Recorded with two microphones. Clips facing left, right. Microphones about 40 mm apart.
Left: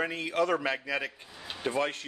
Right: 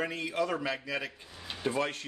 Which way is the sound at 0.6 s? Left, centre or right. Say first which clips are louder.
Left 3 dB; left.